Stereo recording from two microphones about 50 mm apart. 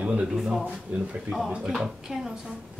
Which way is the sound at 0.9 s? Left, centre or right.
Right.